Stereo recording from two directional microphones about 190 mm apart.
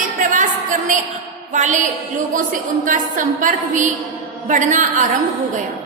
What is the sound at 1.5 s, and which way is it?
A woman's voice, 40° right (ahead or behind).